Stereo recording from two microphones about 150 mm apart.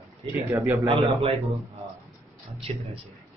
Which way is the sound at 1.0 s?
40° right (ahead or behind).